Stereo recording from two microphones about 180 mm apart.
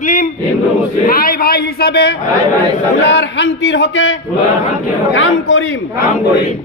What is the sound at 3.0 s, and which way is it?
A man's voice, 75° left (ahead or behind).